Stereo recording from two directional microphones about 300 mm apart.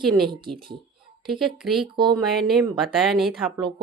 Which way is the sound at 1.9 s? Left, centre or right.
Centre.